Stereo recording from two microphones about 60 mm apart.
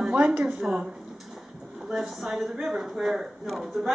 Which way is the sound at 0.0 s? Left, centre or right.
Right.